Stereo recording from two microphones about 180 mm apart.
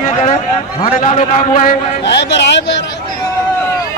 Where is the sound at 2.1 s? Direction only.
75° left (ahead or behind).